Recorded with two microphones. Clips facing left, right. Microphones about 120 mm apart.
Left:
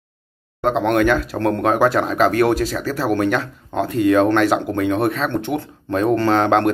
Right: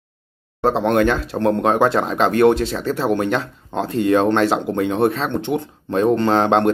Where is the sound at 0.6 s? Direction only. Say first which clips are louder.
Right 1 dB; 30° right (ahead or behind).